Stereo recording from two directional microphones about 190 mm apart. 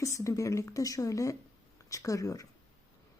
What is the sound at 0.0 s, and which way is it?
Speech, 15° left (ahead or behind).